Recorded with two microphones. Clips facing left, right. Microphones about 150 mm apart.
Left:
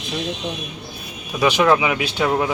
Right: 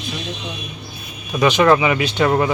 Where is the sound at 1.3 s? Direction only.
10° left (ahead or behind).